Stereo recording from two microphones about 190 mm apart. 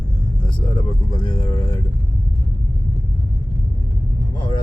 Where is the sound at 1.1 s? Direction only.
25° left (ahead or behind).